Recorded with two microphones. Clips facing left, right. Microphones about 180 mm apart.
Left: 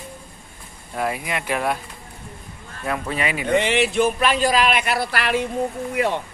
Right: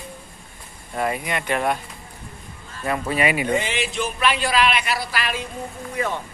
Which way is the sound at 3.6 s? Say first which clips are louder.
Left 7 dB; 65° left (ahead or behind).